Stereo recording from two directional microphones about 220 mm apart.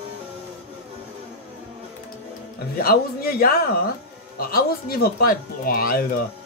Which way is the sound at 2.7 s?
45° left (ahead or behind).